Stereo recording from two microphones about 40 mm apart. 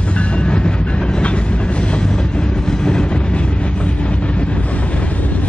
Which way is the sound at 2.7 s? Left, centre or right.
Left.